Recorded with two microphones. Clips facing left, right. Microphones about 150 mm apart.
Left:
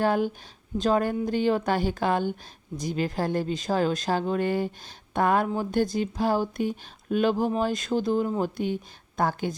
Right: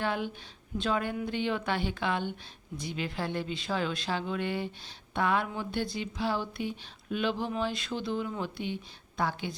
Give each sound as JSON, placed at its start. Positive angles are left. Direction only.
{"t": 0.0, "sound": "a woman's voice", "side_deg": 40}